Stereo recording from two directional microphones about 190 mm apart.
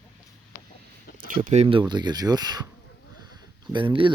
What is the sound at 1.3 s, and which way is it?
Speech, 40° right (ahead or behind).